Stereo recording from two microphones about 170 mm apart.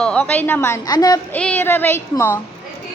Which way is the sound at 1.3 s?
10° left (ahead or behind).